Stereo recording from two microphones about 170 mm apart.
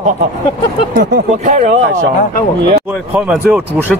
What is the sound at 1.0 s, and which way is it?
Speech, 45° right (ahead or behind).